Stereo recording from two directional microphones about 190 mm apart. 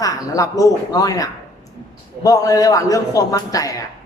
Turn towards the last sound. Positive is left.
turn(degrees=20)  # may be behind; listen again after turning